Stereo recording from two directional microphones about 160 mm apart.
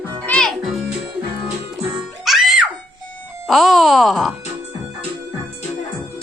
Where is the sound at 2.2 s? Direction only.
Centre (ahead or behind).